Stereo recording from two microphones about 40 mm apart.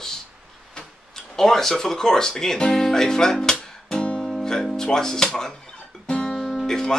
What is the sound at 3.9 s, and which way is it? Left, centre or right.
Music, left.